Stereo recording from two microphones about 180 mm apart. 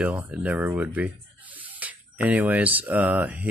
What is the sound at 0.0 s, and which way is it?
Speech, 10° right (ahead or behind).